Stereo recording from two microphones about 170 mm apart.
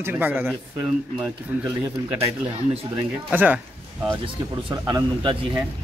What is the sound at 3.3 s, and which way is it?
Speech, 10° right (ahead or behind).